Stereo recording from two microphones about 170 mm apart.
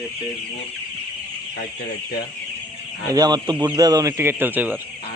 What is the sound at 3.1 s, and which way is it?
Speech, 25° right (ahead or behind).